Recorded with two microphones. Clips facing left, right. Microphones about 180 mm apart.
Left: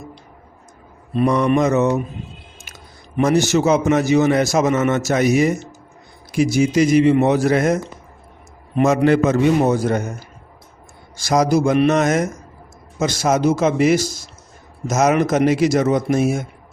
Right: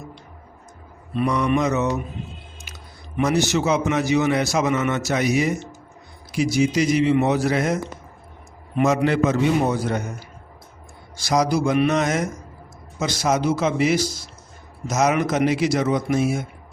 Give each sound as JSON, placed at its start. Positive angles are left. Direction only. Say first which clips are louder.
{"t": 1.1, "sound": "a man's voice", "louder": "left 4 dB", "side_deg": 45}
{"t": 3.2, "sound": "a man's voice", "louder": "left 4 dB", "side_deg": 45}
{"t": 8.8, "sound": "a man's voice", "louder": "left 4 dB", "side_deg": 45}
{"t": 11.2, "sound": "a man's voice", "louder": "left 4 dB", "side_deg": 50}